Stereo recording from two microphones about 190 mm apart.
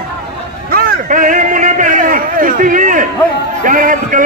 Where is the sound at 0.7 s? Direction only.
50° right (ahead or behind).